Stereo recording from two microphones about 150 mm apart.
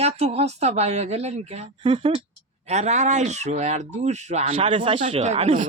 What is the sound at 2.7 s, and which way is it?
A man's voice, 50° right (ahead or behind).